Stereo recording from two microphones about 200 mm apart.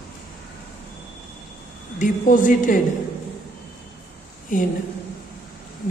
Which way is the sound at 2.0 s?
40° left (ahead or behind).